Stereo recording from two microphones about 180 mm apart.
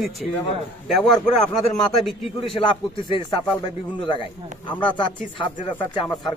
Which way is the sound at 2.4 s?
30° left (ahead or behind).